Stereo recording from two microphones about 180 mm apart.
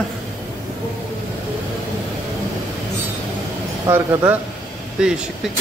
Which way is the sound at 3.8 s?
15° right (ahead or behind).